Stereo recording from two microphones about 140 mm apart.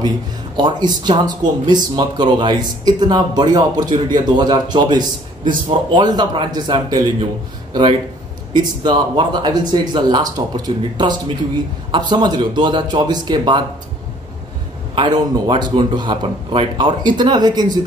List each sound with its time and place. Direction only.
0.6 s speech: 30° right (ahead or behind)
8.8 s speech: 30° right (ahead or behind)
15.0 s speech: 35° right (ahead or behind)